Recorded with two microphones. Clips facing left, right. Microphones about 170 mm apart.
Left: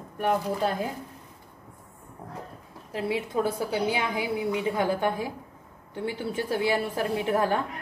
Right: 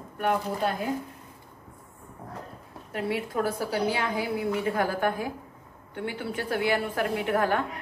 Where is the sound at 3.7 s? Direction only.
20° left (ahead or behind).